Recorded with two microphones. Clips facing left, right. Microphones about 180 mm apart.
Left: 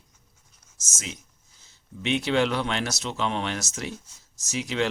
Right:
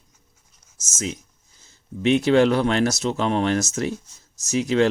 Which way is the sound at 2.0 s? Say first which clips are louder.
Right 7 dB; 45° right (ahead or behind).